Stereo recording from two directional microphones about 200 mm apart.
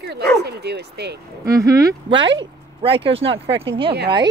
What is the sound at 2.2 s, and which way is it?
Speech, 65° right (ahead or behind).